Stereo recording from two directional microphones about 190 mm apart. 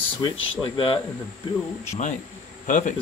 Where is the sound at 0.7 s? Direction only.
25° left (ahead or behind).